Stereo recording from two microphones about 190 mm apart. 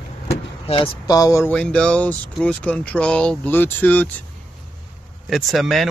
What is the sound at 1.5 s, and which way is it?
Speech, 5° left (ahead or behind).